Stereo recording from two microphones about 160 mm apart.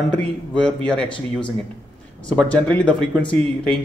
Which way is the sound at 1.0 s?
30° left (ahead or behind).